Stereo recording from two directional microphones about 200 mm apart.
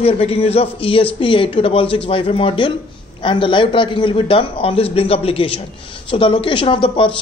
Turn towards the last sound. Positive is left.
turn(degrees=25)  # may be behind; listen again after turning